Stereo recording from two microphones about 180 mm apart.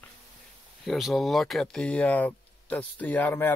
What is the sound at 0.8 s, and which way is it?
Speech, centre (ahead or behind).